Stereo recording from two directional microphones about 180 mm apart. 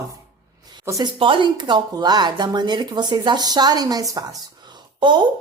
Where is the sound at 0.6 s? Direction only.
25° right (ahead or behind).